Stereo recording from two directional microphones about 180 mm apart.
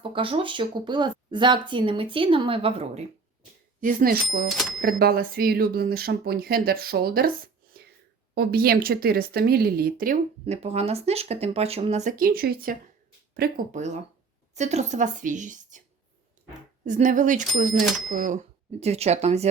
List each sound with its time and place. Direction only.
0.0 s speech: 30° right (ahead or behind)
3.8 s speech: 50° right (ahead or behind)
4.5 s speech: centre (ahead or behind)
4.8 s speech: 55° right (ahead or behind)
10.4 s speech: 35° right (ahead or behind); by 13.7 s 60° right (ahead or behind)
13.7 s a woman's voice: 40° right (ahead or behind)
16.8 s a woman's voice: 45° right (ahead or behind)